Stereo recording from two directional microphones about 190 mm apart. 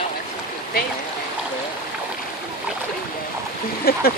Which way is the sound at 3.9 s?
55° left (ahead or behind).